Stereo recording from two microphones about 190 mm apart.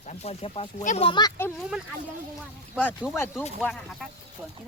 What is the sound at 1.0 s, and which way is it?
Speech, 25° left (ahead or behind).